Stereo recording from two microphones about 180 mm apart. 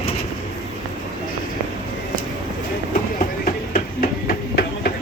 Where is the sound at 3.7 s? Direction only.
55° left (ahead or behind).